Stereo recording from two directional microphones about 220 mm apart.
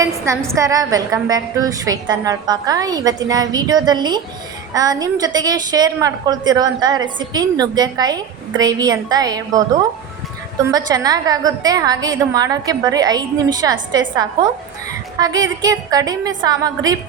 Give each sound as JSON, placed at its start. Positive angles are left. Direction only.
{"t": 0.0, "sound": "a woman's voice", "side_deg": -15}
{"t": 10.7, "sound": "a woman's voice", "side_deg": -15}
{"t": 15.2, "sound": "a woman's voice", "side_deg": -15}